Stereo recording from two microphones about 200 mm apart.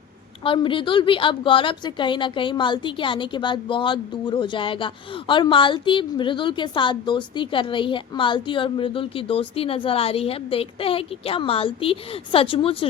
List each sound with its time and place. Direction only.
0.4 s a woman's voice: 25° left (ahead or behind)